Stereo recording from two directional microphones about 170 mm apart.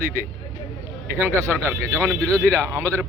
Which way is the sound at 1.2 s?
15° right (ahead or behind).